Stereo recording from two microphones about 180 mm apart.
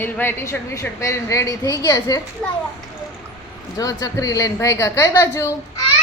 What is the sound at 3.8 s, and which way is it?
A woman's voice, 20° left (ahead or behind).